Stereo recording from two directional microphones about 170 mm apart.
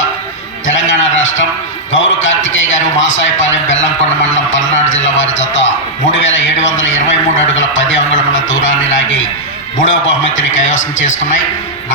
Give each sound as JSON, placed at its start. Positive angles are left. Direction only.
{"t": 0.7, "sound": "a sound", "side_deg": 90}
{"t": 1.9, "sound": "a man's voice", "side_deg": 90}
{"t": 9.9, "sound": "a man's voice", "side_deg": 90}